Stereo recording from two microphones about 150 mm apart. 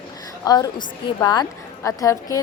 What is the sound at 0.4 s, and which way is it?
A woman's voice, 25° left (ahead or behind).